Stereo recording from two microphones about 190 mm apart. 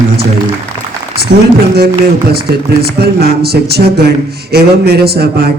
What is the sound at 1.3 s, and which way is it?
Speech, 60° right (ahead or behind).